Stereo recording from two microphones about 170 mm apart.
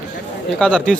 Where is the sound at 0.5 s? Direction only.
5° left (ahead or behind).